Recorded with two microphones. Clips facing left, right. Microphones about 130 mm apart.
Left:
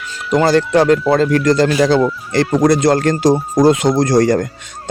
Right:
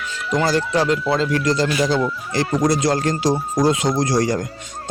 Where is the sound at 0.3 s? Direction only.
65° left (ahead or behind).